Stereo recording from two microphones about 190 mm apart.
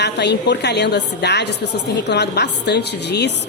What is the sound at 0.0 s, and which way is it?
A woman's voice, 65° left (ahead or behind).